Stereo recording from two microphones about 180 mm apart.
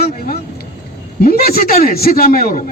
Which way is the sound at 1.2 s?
55° left (ahead or behind).